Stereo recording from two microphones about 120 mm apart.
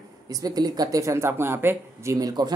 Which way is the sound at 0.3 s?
30° right (ahead or behind).